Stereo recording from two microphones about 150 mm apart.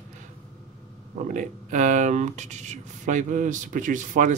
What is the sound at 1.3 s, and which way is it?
Speech, 60° right (ahead or behind).